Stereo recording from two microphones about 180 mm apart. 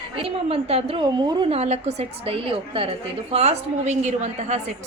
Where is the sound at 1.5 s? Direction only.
35° right (ahead or behind).